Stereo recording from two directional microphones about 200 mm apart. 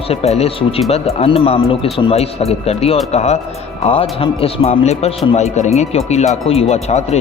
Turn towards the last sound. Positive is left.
turn(degrees=30)  # may be behind; listen again after turning